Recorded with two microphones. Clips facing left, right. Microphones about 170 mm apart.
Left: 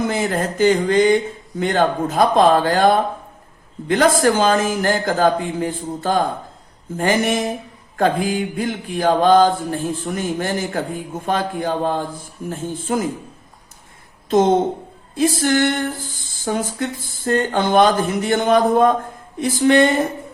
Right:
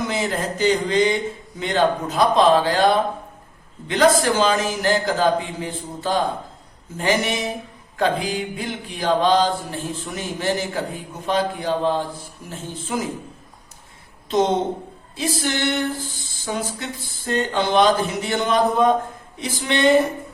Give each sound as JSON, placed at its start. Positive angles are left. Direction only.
{"t": 0.1, "sound": "mantra", "side_deg": 50}
{"t": 14.3, "sound": "mantra", "side_deg": 50}